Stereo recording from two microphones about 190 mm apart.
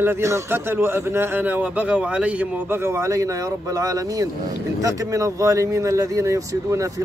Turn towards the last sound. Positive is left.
turn(degrees=-15)  # may be behind; listen again after turning